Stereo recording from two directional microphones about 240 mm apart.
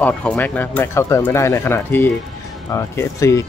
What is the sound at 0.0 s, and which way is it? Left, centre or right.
Speech, centre.